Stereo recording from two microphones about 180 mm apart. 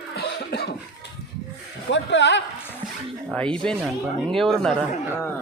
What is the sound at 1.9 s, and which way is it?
Speech, 80° left.